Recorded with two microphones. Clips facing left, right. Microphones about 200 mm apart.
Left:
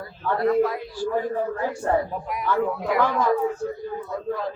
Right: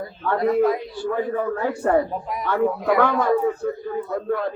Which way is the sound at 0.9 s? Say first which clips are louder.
Right 1 dB; 60° right (ahead or behind).